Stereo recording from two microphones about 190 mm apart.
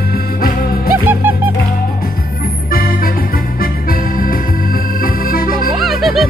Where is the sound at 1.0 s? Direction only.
10° right (ahead or behind).